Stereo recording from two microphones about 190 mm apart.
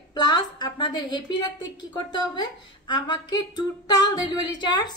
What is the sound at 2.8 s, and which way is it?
A woman's voice, 25° left (ahead or behind).